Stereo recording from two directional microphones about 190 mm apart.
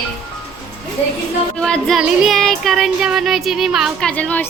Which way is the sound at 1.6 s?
5° left (ahead or behind).